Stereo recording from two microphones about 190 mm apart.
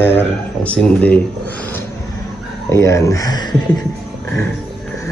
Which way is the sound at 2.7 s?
15° left (ahead or behind).